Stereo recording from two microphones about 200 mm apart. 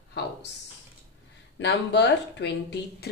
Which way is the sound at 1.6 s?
60° left (ahead or behind).